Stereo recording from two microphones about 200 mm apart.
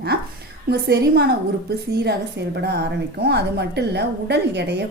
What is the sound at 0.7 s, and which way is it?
Speech, 55° right (ahead or behind).